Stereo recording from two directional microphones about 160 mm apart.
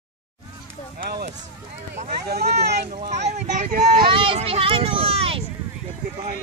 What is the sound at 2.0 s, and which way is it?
Speech, 80° right.